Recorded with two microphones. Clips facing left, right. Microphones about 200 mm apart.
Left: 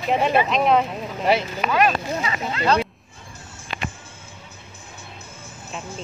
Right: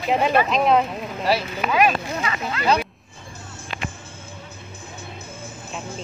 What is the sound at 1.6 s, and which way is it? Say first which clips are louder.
Speech: right 1 dB; 5° right (ahead or behind).